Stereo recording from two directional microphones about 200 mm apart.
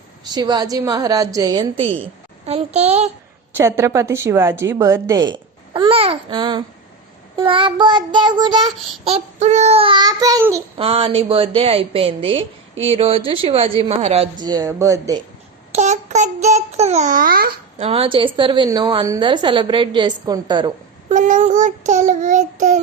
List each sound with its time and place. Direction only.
0.3 s a woman's voice: 20° right (ahead or behind)
3.5 s a woman's voice: 15° right (ahead or behind)
9.0 s a woman's voice: 30° right (ahead or behind); by 10.6 s 15° right (ahead or behind)
10.8 s a woman's voice: 30° right (ahead or behind)
15.7 s a child's voice: 35° right (ahead or behind)
17.7 s a woman's voice: 30° right (ahead or behind)
21.1 s a child's voice: 40° right (ahead or behind)